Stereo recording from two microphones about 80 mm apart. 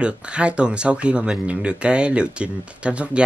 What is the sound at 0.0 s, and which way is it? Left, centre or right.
Speech, centre.